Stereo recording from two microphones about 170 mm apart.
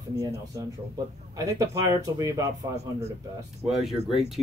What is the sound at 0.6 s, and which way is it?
Speech, 20° right (ahead or behind).